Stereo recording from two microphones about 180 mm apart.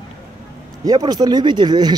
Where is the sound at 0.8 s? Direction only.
20° right (ahead or behind).